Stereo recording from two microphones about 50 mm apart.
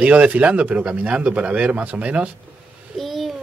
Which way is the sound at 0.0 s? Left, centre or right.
Right.